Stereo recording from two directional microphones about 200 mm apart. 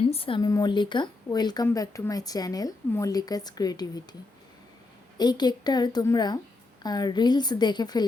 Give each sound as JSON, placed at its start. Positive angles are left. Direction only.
{"t": 0.1, "sound": "a woman's voice", "side_deg": 25}
{"t": 5.1, "sound": "a woman's voice", "side_deg": 20}